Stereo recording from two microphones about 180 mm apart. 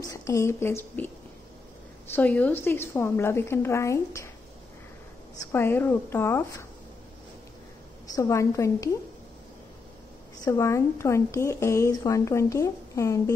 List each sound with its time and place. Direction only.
0.0 s a woman's voice: 20° left (ahead or behind)
2.1 s a woman's voice: 10° left (ahead or behind)
5.4 s a woman's voice: 10° left (ahead or behind)
8.1 s a woman's voice: 15° left (ahead or behind)
10.4 s a woman's voice: 20° left (ahead or behind)